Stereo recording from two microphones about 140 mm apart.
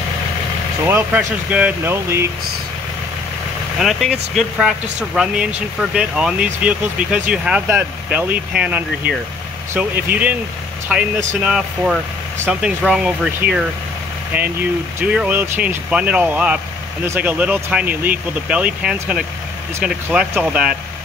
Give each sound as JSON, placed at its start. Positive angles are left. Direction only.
{"t": 0.8, "sound": "speech", "side_deg": -15}
{"t": 3.8, "sound": "speech", "side_deg": 0}
{"t": 10.9, "sound": "speech", "side_deg": -5}
{"t": 15.0, "sound": "speech", "side_deg": -10}